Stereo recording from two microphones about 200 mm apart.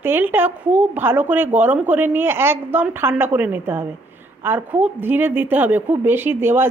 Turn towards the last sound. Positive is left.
turn(degrees=-10)  # may be behind; listen again after turning